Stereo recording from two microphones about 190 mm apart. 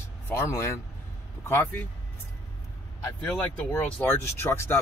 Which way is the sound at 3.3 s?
10° left (ahead or behind).